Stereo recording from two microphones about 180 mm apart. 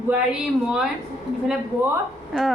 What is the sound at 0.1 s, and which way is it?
Speech, 5° right (ahead or behind).